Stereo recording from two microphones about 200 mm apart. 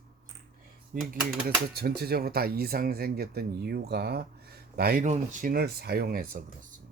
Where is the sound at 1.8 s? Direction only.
50° right (ahead or behind).